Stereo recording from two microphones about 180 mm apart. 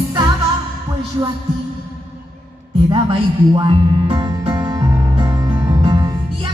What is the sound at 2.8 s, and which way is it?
Speech, 25° right (ahead or behind).